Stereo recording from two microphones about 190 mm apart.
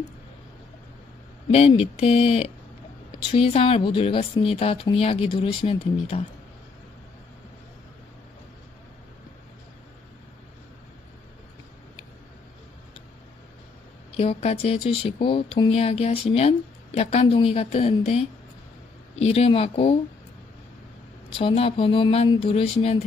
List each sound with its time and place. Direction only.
1.5 s speech: 30° left (ahead or behind)
14.1 s speech: 30° left (ahead or behind)
21.4 s speech: 30° left (ahead or behind)